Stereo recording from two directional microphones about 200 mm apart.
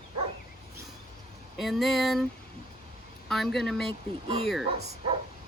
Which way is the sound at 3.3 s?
Centre (ahead or behind).